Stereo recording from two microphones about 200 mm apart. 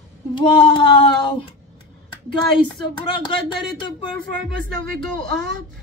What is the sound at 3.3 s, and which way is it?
Speech, 25° left (ahead or behind).